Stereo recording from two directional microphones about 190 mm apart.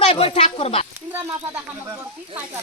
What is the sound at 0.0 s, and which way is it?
Speech, 30° left (ahead or behind).